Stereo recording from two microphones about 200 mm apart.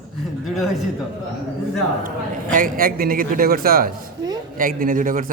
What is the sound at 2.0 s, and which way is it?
A man's voice, 40° right (ahead or behind).